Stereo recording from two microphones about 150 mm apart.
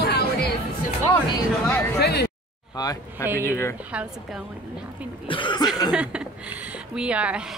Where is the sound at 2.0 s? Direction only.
90° left.